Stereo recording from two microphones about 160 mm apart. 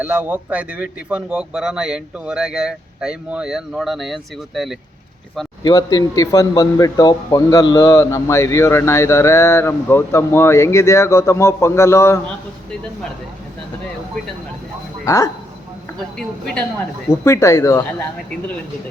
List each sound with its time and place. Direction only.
0.0 s a man's voice: 10° right (ahead or behind)
5.6 s a man's voice: 25° left (ahead or behind)
15.0 s speech: 20° left (ahead or behind)
16.0 s a man's voice: 5° left (ahead or behind)
17.2 s speech: 20° left (ahead or behind)